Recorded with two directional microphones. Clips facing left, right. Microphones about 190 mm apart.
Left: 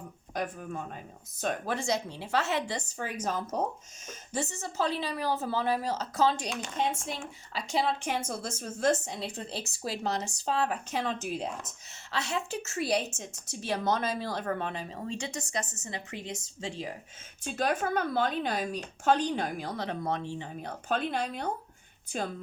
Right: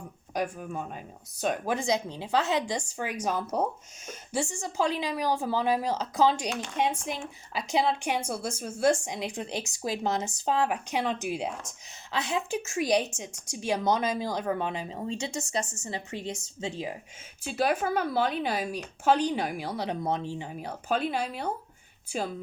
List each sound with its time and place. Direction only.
0.3 s speech: 10° right (ahead or behind)
14.8 s speech: 25° right (ahead or behind)
17.4 s speech: 10° right (ahead or behind)